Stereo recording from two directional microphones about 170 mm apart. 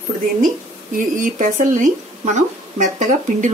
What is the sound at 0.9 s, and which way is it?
Speech, 50° right (ahead or behind).